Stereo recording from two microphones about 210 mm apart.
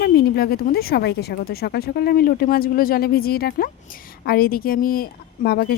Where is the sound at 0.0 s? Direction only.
50° left (ahead or behind).